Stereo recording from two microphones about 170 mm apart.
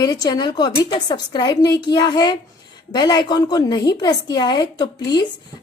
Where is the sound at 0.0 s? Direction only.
25° left (ahead or behind).